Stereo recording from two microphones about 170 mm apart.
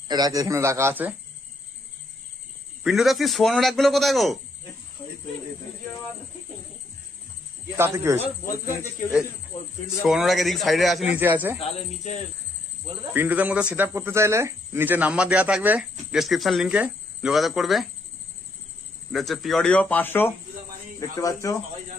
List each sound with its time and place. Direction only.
0.1 s speech: 20° right (ahead or behind)
2.8 s a man's voice: centre (ahead or behind)
7.7 s speech: 15° right (ahead or behind)
10.0 s a man's voice: centre (ahead or behind)
11.1 s speech: 10° right (ahead or behind)
11.6 s speech: 45° left (ahead or behind)
13.1 s speech: 10° right (ahead or behind)
19.1 s speech: centre (ahead or behind); by 21.5 s 20° left (ahead or behind)